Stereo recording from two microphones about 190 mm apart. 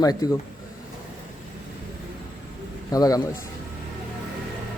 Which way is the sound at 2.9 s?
20° left (ahead or behind).